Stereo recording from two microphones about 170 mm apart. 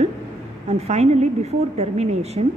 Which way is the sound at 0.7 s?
40° right (ahead or behind).